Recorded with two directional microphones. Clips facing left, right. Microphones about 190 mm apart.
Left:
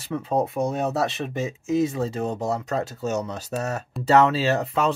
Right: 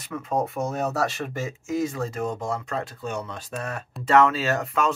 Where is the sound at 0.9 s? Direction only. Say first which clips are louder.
Left 2 dB; 20° left (ahead or behind).